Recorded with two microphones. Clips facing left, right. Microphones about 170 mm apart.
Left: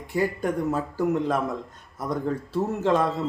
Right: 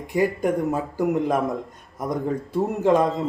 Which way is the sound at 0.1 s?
15° right (ahead or behind).